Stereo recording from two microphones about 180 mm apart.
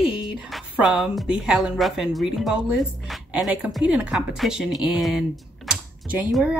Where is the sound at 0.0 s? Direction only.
30° left (ahead or behind).